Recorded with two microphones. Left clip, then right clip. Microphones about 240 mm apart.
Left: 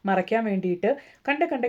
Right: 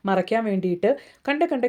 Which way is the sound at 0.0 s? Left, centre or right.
Right.